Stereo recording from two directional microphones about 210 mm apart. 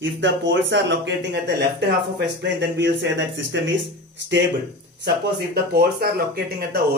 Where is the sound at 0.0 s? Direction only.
60° right (ahead or behind).